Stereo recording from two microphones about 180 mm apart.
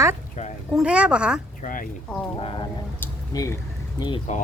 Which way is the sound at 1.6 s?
50° left (ahead or behind).